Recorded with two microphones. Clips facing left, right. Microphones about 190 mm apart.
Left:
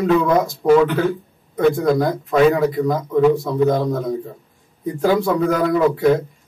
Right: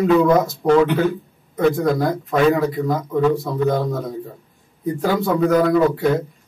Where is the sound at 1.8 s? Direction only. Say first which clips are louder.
Left 1 dB; centre (ahead or behind).